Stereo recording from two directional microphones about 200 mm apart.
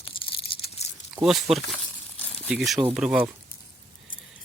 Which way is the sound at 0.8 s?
35° left (ahead or behind).